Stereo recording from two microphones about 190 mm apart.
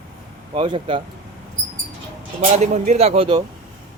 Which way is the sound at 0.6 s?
25° right (ahead or behind).